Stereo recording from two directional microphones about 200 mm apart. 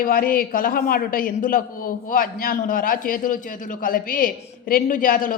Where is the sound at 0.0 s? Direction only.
45° left (ahead or behind).